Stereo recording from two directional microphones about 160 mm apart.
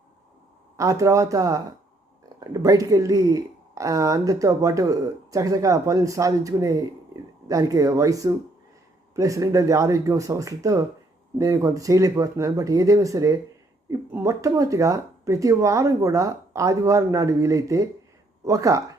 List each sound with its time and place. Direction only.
0.8 s speech: 20° right (ahead or behind)